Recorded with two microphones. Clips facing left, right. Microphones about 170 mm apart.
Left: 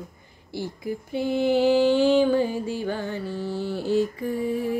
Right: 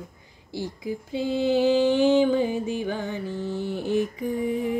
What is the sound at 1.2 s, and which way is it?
Music, 15° right (ahead or behind).